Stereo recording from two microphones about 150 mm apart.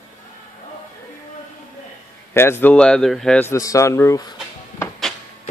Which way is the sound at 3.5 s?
20° left (ahead or behind).